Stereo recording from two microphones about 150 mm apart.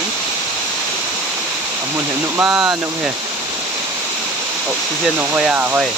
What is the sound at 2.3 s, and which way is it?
Speech, 10° right (ahead or behind).